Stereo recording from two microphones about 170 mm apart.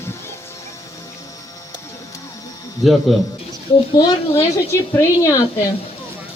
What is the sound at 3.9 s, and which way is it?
A woman's voice, 20° left (ahead or behind).